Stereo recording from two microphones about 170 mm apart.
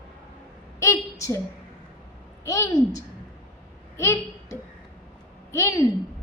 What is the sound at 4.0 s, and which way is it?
A woman's voice, 15° left (ahead or behind).